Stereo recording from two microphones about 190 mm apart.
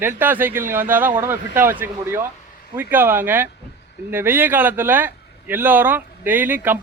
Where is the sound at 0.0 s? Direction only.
10° right (ahead or behind).